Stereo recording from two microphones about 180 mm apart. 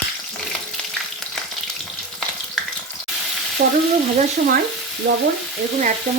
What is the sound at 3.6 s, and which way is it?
Speech, 50° right (ahead or behind).